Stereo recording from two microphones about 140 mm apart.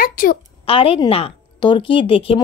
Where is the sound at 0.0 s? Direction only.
85° left.